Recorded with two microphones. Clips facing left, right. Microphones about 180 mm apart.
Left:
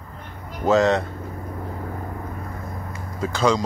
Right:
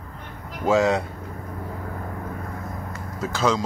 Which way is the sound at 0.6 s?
10° right (ahead or behind).